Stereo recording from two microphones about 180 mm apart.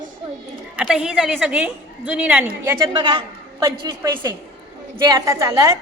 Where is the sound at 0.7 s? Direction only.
5° right (ahead or behind).